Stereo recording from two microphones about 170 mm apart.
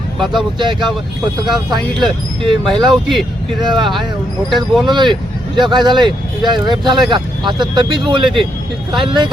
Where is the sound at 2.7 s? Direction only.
30° right (ahead or behind).